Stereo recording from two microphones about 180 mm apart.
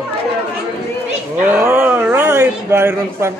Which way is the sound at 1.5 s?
5° right (ahead or behind).